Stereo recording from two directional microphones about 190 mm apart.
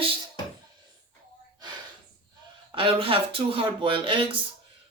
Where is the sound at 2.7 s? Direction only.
30° right (ahead or behind).